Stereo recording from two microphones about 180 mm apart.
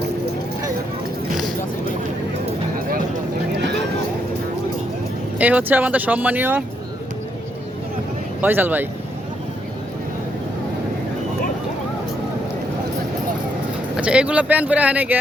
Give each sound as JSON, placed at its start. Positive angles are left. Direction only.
{"t": 5.4, "sound": "speech", "side_deg": -10}
{"t": 8.4, "sound": "speech", "side_deg": -10}
{"t": 13.9, "sound": "speech", "side_deg": -5}